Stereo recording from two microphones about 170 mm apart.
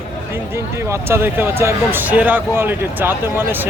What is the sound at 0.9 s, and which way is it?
A man's voice, 15° right (ahead or behind).